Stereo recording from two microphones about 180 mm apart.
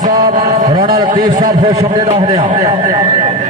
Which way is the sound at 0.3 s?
45° right (ahead or behind).